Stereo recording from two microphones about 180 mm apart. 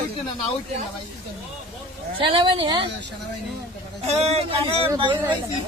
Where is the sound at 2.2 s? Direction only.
30° right (ahead or behind).